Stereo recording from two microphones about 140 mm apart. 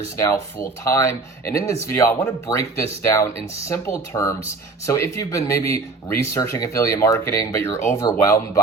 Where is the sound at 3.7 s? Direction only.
20° left (ahead or behind).